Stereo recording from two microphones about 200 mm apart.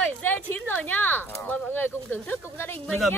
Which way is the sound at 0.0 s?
10° left (ahead or behind).